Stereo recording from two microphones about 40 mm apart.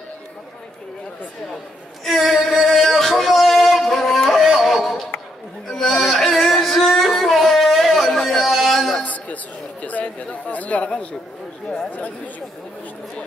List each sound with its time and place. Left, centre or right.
2.0 s female singing: centre
2.8 s a sound: centre
5.7 s music: centre
9.0 s chatter: left